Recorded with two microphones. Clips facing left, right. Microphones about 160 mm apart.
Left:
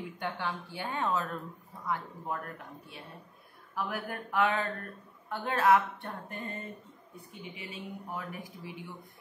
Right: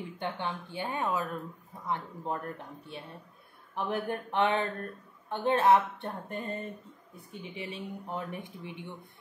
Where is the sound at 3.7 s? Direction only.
25° right (ahead or behind).